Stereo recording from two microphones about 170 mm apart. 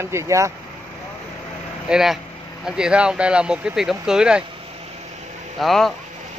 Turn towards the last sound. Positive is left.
turn(degrees=0)  # may be behind; listen again after turning